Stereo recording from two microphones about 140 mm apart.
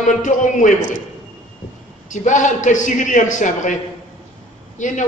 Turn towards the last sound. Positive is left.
turn(degrees=65)  # may be behind; listen again after turning